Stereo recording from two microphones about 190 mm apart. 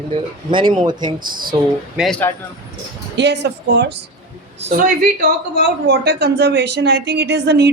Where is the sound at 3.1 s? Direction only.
65° right (ahead or behind).